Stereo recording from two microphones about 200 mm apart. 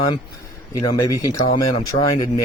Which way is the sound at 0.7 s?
20° left (ahead or behind).